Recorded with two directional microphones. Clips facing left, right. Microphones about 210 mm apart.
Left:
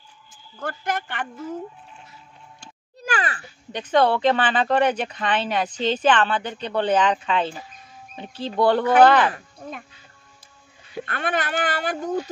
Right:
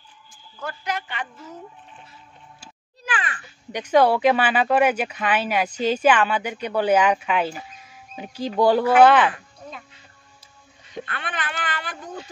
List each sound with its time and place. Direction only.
0.6 s a woman's voice: 50° left (ahead or behind)
3.1 s a sound: 40° left (ahead or behind)
3.7 s speech: 10° right (ahead or behind)
9.3 s speech: 50° left (ahead or behind)
11.1 s a woman's voice: 45° left (ahead or behind)